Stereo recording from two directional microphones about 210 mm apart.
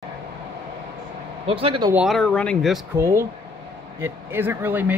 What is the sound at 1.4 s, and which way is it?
Speech, 25° right (ahead or behind).